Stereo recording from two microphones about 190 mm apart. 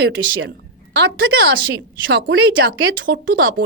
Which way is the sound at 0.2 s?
70° right (ahead or behind).